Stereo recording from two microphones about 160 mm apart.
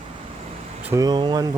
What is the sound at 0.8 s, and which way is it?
Speech, 20° right (ahead or behind).